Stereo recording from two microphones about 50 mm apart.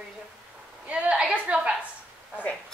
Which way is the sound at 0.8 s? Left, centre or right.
Right.